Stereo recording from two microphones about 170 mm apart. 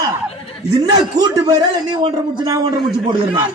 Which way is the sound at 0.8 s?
25° right (ahead or behind).